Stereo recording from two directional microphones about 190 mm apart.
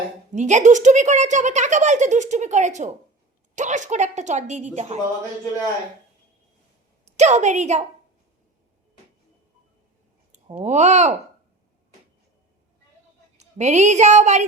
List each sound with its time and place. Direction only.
0.3 s a woman's voice: 40° right (ahead or behind)
7.0 s a woman's voice: 35° right (ahead or behind)
10.6 s a woman's voice: 35° right (ahead or behind)
13.3 s speech: 35° right (ahead or behind)